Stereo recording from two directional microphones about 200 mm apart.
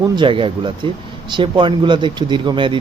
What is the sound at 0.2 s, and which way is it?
A man's voice, 25° right (ahead or behind).